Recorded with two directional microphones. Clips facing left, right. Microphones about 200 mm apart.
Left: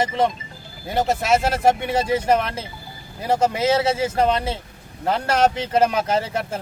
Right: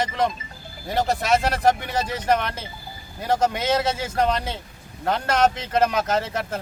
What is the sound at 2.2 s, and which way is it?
A man's voice, 5° left (ahead or behind).